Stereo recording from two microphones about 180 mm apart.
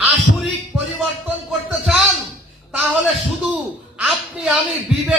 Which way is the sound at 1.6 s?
5° right (ahead or behind).